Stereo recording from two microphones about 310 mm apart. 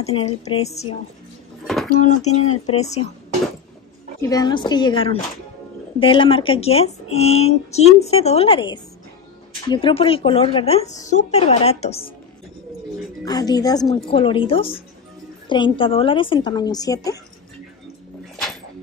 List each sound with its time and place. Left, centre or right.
0.0 s speech: centre
4.2 s a woman's voice: centre
13.2 s a woman's voice: centre